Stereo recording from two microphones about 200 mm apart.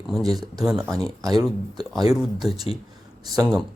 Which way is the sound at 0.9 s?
20° right (ahead or behind).